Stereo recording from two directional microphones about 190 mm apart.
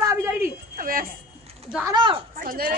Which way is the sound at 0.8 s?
50° right (ahead or behind).